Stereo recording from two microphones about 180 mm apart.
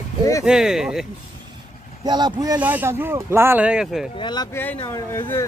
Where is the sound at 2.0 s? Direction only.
25° right (ahead or behind).